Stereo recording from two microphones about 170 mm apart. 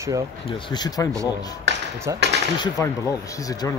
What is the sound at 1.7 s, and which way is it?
Speech, 90° right.